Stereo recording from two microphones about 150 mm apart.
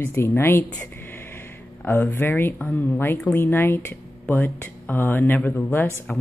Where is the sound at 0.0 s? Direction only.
15° left (ahead or behind).